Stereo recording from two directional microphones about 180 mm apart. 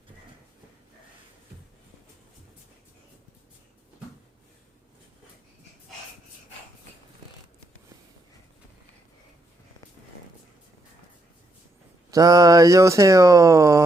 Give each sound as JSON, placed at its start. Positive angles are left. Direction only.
{"t": 12.1, "sound": "speech", "side_deg": -20}